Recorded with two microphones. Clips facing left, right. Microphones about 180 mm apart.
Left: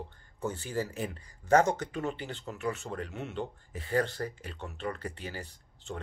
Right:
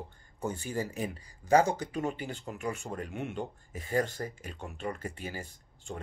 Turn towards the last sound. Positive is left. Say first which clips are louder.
# left 1 dB
turn(degrees=-10)  # may be behind; listen again after turning